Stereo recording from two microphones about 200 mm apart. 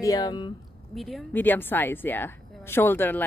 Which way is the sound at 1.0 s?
Centre (ahead or behind).